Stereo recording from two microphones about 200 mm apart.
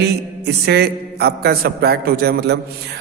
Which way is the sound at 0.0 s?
55° right (ahead or behind).